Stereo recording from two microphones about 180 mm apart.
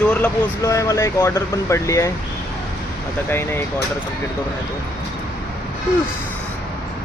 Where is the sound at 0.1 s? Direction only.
15° left (ahead or behind).